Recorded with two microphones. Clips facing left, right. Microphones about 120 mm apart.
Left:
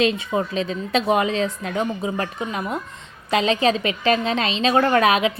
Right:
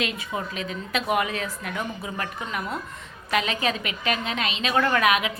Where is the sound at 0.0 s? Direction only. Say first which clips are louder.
Left 8 dB; 30° left (ahead or behind).